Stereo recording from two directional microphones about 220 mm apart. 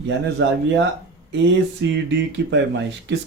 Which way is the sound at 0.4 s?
55° right (ahead or behind).